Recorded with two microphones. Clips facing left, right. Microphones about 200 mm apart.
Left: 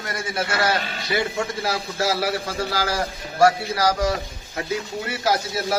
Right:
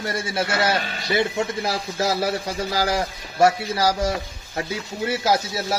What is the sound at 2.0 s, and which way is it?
A man's voice, 15° right (ahead or behind).